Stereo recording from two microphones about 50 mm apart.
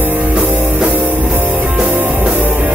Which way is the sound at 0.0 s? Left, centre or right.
Right.